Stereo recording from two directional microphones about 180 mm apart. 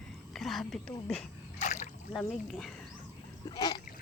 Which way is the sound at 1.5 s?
40° left (ahead or behind).